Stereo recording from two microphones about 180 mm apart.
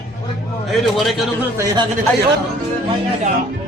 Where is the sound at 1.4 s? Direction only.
15° right (ahead or behind).